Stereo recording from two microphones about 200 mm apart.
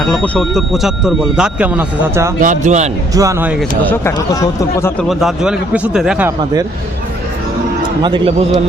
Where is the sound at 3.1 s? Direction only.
15° right (ahead or behind).